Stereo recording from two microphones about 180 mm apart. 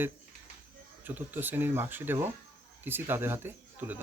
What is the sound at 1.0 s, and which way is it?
Speech, 10° right (ahead or behind).